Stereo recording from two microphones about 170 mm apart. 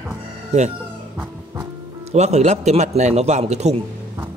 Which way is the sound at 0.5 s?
40° right (ahead or behind).